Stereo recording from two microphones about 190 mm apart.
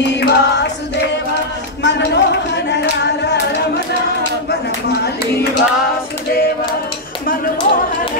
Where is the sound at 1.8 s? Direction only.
65° left (ahead or behind).